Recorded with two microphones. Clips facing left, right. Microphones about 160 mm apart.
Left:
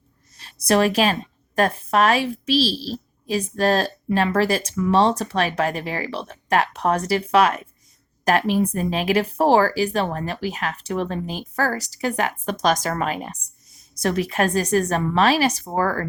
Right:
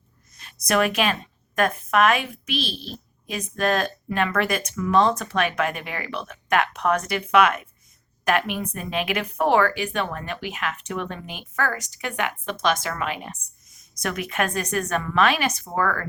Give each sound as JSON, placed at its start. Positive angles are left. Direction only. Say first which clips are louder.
{"t": 0.3, "sound": "speech", "louder": "left 3 dB", "side_deg": 30}